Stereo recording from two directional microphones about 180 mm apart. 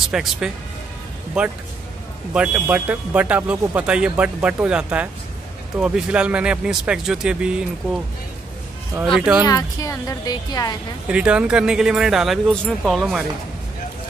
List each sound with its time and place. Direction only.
0.1 s speech: centre (ahead or behind)
9.0 s speech: centre (ahead or behind)
9.4 s a woman's voice: 20° left (ahead or behind)
11.1 s speech: 5° right (ahead or behind)